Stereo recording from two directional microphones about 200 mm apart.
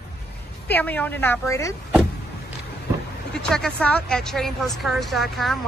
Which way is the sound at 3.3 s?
5° left (ahead or behind).